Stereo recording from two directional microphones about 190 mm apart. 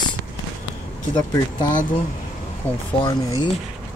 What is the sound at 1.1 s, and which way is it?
Speech, 20° left (ahead or behind).